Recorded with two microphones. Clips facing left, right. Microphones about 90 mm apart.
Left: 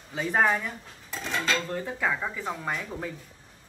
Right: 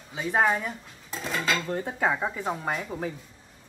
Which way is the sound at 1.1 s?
5° right (ahead or behind).